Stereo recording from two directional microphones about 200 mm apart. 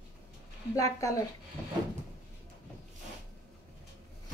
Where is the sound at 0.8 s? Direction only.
15° left (ahead or behind).